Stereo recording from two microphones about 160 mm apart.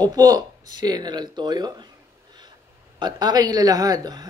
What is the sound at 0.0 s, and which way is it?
Speech, 25° right (ahead or behind).